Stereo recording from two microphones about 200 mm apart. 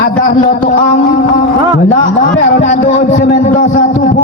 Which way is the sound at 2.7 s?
40° left (ahead or behind).